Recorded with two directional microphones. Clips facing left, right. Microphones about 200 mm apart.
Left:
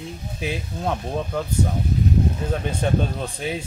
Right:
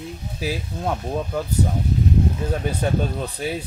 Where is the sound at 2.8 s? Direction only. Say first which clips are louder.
Even; 5° right (ahead or behind).